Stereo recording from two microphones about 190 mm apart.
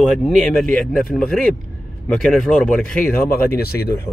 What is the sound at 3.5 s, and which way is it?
Speech, 55° left (ahead or behind).